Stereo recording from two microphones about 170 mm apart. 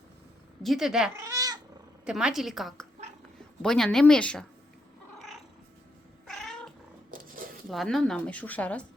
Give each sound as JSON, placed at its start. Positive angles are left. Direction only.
{"t": 0.6, "sound": "speech", "side_deg": 0}
{"t": 1.1, "sound": "cat", "side_deg": -20}
{"t": 2.0, "sound": "speech", "side_deg": -5}
{"t": 6.2, "sound": "cat", "side_deg": 0}
{"t": 7.7, "sound": "speech", "side_deg": 0}